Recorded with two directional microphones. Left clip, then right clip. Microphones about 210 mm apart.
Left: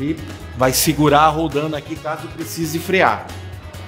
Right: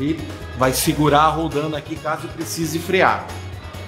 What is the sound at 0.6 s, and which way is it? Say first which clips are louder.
A man's voice: left 2 dB; 30° left (ahead or behind).